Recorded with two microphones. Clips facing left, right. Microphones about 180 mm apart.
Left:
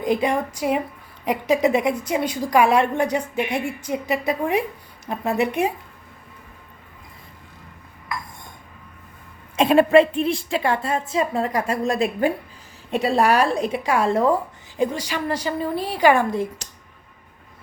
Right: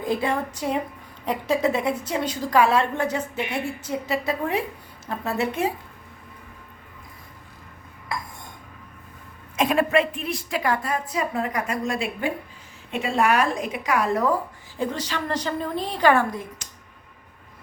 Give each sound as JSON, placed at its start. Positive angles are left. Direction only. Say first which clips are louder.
{"t": 0.0, "sound": "a woman's voice", "louder": "left 3 dB", "side_deg": 15}
{"t": 9.6, "sound": "a woman's voice", "louder": "left 6 dB", "side_deg": 30}
{"t": 14.8, "sound": "a woman's voice", "louder": "left 4 dB", "side_deg": 10}
{"t": 16.3, "sound": "a woman's voice", "louder": "left 9 dB", "side_deg": 30}